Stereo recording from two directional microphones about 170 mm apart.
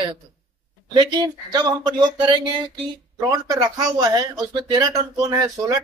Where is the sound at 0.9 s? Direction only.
25° right (ahead or behind).